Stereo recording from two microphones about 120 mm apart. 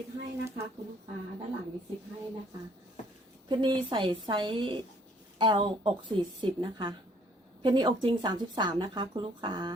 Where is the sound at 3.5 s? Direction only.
40° right (ahead or behind).